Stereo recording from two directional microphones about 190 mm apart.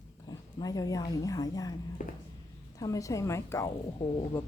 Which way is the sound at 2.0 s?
45° left (ahead or behind).